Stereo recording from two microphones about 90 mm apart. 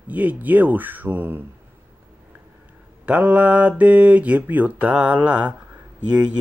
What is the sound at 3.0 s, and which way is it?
Speech, 15° right (ahead or behind).